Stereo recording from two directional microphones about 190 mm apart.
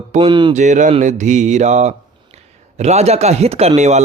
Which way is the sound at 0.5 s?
40° right (ahead or behind).